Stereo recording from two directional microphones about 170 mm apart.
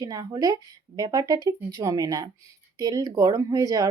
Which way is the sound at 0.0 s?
20° right (ahead or behind).